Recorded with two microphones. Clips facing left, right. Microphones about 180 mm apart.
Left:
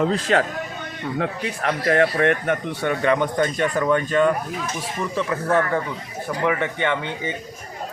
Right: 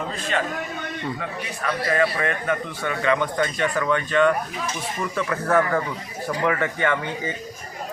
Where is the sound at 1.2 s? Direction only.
70° left (ahead or behind).